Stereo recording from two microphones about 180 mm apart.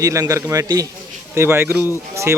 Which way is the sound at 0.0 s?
15° right (ahead or behind).